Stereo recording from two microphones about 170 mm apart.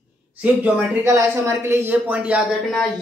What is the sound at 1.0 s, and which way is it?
Speech, 15° right (ahead or behind).